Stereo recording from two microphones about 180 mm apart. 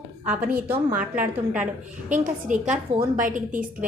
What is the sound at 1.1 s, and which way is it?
Speech, 10° right (ahead or behind).